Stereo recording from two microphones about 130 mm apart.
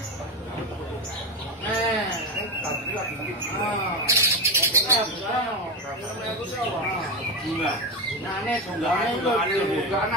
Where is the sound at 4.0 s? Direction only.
20° right (ahead or behind).